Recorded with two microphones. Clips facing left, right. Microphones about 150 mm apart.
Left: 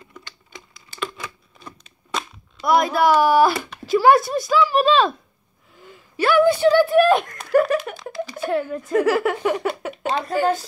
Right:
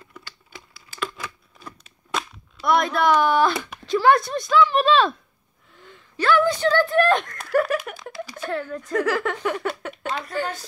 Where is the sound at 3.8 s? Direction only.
5° left (ahead or behind).